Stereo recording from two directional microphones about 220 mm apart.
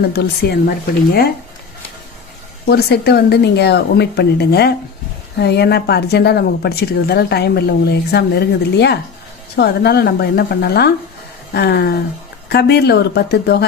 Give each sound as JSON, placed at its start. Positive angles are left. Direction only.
{"t": 0.1, "sound": "a woman's voice", "side_deg": 45}
{"t": 2.6, "sound": "a woman's voice", "side_deg": 45}